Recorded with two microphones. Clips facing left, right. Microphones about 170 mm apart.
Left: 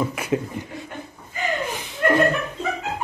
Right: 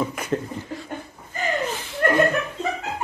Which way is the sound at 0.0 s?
5° left (ahead or behind).